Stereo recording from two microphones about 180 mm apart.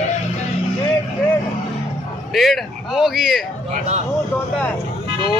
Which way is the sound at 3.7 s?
40° right (ahead or behind).